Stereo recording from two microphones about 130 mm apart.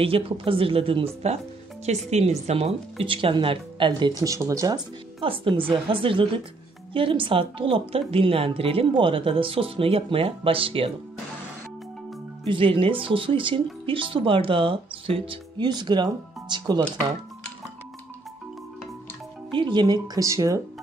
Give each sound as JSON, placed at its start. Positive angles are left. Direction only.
{"t": 0.0, "sound": "speech", "side_deg": -45}
{"t": 4.2, "sound": "speech", "side_deg": -25}
{"t": 5.2, "sound": "speech", "side_deg": -40}
{"t": 12.4, "sound": "speech", "side_deg": -40}
{"t": 19.5, "sound": "speech", "side_deg": -35}